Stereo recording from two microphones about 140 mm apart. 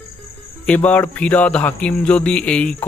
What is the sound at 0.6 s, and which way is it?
Speech, 10° left (ahead or behind).